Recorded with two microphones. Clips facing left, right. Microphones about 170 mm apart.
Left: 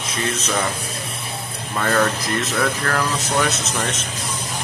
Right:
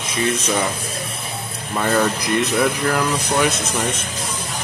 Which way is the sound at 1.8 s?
10° right (ahead or behind).